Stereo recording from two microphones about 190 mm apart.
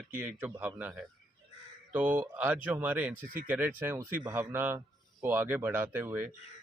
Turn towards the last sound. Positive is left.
turn(degrees=-10)  # may be behind; listen again after turning